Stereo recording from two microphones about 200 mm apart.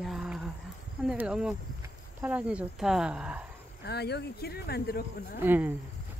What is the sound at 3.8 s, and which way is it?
Speech, 55° left (ahead or behind).